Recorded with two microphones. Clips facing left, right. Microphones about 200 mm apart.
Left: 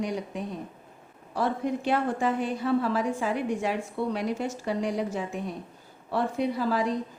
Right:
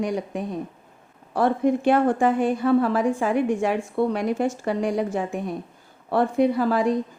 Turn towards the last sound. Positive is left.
turn(degrees=-55)  # may be behind; listen again after turning